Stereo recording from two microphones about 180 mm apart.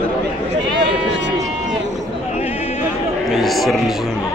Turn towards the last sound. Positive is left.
turn(degrees=0)  # may be behind; listen again after turning